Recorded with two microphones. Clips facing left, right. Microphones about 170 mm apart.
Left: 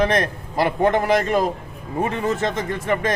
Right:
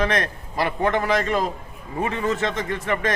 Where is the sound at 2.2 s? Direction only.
45° left (ahead or behind).